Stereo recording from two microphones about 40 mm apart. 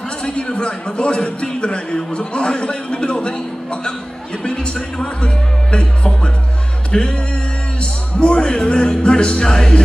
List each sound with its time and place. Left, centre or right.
0.2 s speech: left
6.9 s a sound: left
7.8 s speech: left